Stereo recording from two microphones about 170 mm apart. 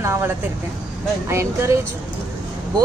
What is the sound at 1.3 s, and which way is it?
Speech, 15° right (ahead or behind).